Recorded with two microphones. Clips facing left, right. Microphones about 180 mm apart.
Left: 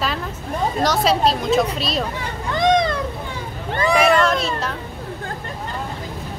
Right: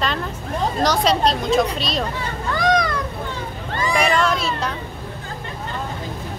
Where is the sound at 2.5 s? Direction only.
25° left (ahead or behind).